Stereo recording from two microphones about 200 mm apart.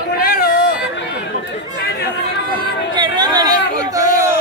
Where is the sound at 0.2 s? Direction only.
45° left (ahead or behind).